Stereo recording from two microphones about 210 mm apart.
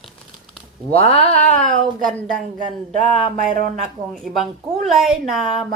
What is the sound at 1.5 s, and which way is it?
Speech, 40° right (ahead or behind).